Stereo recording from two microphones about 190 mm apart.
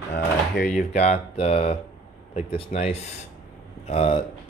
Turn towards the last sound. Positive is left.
turn(degrees=30)  # may be behind; listen again after turning